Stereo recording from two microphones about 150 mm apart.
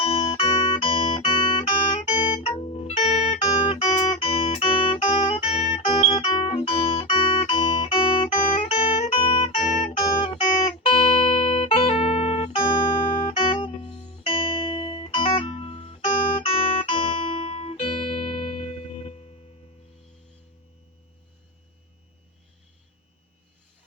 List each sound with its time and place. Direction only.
0.0 s music: 40° left (ahead or behind)
2.5 s music: 45° left (ahead or behind)